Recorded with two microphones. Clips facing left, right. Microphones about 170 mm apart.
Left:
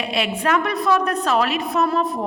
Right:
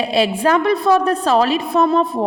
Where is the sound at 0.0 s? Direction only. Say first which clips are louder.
Right 6 dB; 35° right (ahead or behind).